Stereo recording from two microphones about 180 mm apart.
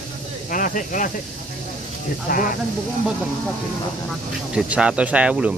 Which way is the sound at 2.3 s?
55° left (ahead or behind).